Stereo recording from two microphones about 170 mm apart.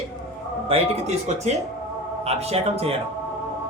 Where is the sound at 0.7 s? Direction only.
40° right (ahead or behind).